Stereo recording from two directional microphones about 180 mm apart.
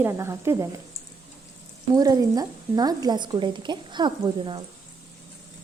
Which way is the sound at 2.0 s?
20° right (ahead or behind).